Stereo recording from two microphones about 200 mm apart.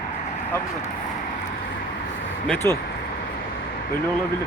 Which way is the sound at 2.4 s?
5° left (ahead or behind).